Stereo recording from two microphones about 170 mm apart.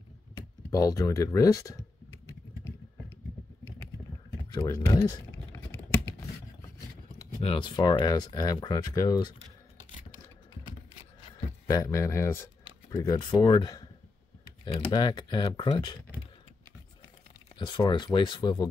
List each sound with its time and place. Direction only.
0.7 s speech: 20° left (ahead or behind)
4.5 s speech: 20° left (ahead or behind)
7.4 s speech: 30° left (ahead or behind)
11.7 s speech: 20° left (ahead or behind)
17.6 s speech: 30° left (ahead or behind)